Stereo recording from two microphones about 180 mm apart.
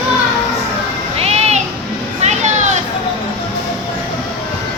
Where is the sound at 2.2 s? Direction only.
40° right (ahead or behind).